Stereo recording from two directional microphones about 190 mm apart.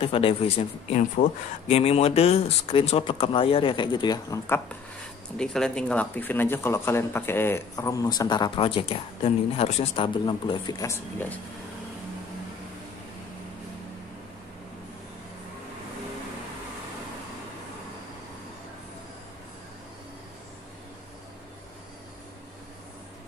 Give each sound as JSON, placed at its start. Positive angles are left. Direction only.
{"t": 0.0, "sound": "speech", "side_deg": 30}
{"t": 5.4, "sound": "speech", "side_deg": 5}